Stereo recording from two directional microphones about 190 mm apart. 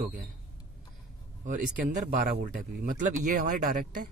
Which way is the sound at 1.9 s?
45° right (ahead or behind).